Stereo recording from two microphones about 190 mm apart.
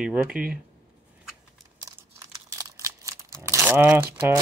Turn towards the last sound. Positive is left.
turn(degrees=-15)  # may be behind; listen again after turning